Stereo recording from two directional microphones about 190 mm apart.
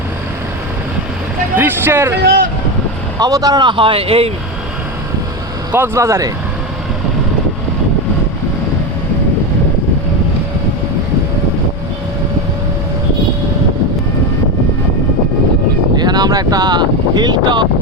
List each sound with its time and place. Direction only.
1.5 s speech: 10° right (ahead or behind)
2.2 s speech: 50° right (ahead or behind)
3.2 s speech: 20° right (ahead or behind)
5.7 s speech: 10° right (ahead or behind)
16.0 s wind noise: 20° right (ahead or behind)